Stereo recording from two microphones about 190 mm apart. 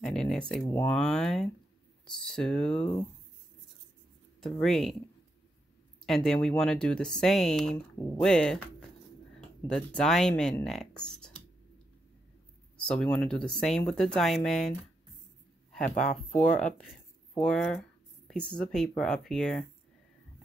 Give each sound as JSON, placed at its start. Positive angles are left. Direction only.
{"t": 0.0, "sound": "speech", "side_deg": 0}
{"t": 4.4, "sound": "speech", "side_deg": 0}
{"t": 6.0, "sound": "speech", "side_deg": 0}
{"t": 9.7, "sound": "speech", "side_deg": 5}
{"t": 12.8, "sound": "speech", "side_deg": 5}
{"t": 15.9, "sound": "speech", "side_deg": 40}
{"t": 17.4, "sound": "a sound", "side_deg": 0}
{"t": 18.5, "sound": "speech", "side_deg": 5}